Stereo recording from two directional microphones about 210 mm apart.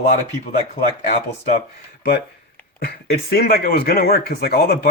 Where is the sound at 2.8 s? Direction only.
50° left (ahead or behind).